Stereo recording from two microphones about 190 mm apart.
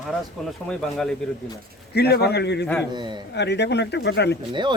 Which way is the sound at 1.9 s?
55° left (ahead or behind).